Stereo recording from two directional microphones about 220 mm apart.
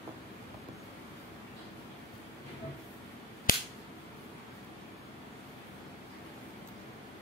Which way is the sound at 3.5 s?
40° left (ahead or behind).